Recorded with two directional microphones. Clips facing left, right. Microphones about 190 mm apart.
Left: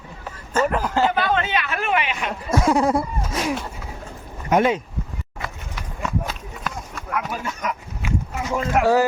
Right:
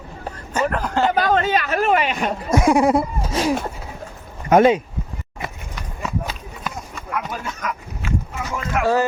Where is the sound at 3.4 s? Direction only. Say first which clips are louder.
Right 4 dB; 30° right (ahead or behind).